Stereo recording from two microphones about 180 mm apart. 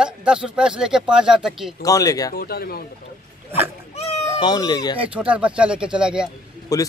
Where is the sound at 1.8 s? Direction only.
20° left (ahead or behind).